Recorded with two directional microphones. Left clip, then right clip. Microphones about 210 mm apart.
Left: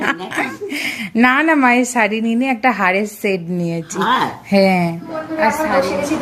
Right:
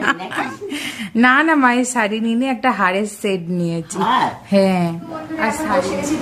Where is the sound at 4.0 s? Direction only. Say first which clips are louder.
Even; 15° left (ahead or behind).